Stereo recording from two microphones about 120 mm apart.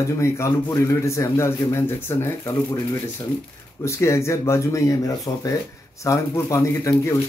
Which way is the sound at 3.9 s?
25° left (ahead or behind).